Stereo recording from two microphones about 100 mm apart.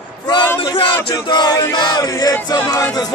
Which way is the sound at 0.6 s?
50° left (ahead or behind).